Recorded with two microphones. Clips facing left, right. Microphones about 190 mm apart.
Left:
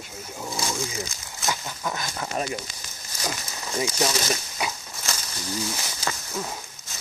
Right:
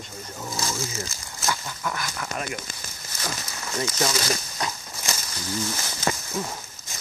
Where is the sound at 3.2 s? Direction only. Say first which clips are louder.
Left 1 dB; 15° left (ahead or behind).